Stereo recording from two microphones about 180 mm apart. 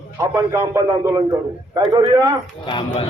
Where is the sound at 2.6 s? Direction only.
25° left (ahead or behind).